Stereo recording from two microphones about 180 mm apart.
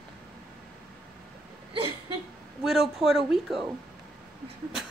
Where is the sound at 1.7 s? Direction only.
30° right (ahead or behind).